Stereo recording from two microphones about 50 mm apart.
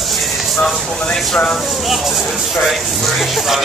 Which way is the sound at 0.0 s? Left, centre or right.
Centre.